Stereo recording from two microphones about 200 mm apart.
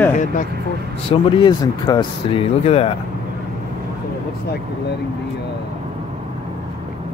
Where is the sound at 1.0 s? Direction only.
25° left (ahead or behind).